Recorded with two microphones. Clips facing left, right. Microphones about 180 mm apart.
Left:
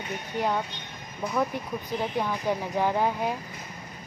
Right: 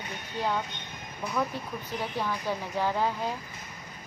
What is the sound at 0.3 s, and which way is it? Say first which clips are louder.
Speech: left 3 dB; 15° left (ahead or behind).